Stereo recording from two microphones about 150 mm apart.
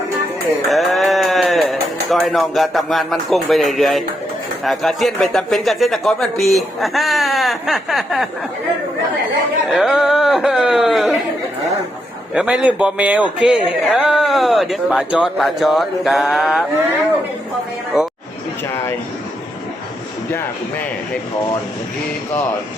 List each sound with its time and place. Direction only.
0.7 s sheep: centre (ahead or behind)
2.0 s speech: centre (ahead or behind)
9.6 s speech: centre (ahead or behind)
12.3 s a man's voice: 5° right (ahead or behind)
20.3 s speech: 10° left (ahead or behind)